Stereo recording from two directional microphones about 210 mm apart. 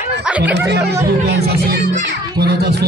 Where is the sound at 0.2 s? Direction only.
5° right (ahead or behind).